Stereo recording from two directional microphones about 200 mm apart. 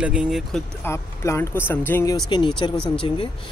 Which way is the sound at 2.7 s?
5° left (ahead or behind).